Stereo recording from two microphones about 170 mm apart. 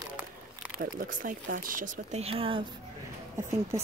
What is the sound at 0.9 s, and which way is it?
Speech, 55° right (ahead or behind).